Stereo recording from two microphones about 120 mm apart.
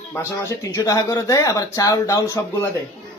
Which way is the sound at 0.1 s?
25° left (ahead or behind).